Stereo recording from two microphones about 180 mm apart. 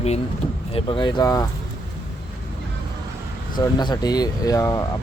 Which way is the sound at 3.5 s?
25° left (ahead or behind).